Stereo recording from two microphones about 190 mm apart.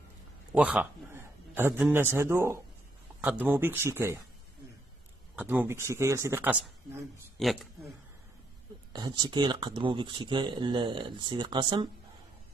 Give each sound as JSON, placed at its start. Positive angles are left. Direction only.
{"t": 0.5, "sound": "a man's voice", "side_deg": -5}
{"t": 5.3, "sound": "speech", "side_deg": -10}
{"t": 7.3, "sound": "speech", "side_deg": 0}
{"t": 9.2, "sound": "speech", "side_deg": -25}